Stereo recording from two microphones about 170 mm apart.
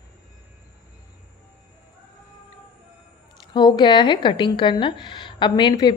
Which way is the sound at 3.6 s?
25° left (ahead or behind).